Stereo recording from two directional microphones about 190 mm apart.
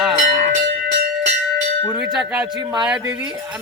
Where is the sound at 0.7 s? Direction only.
65° right (ahead or behind).